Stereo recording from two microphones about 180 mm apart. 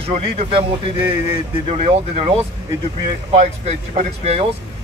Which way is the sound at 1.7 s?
35° right (ahead or behind).